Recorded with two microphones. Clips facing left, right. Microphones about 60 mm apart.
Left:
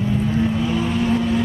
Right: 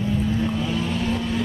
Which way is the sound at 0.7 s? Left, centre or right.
Centre.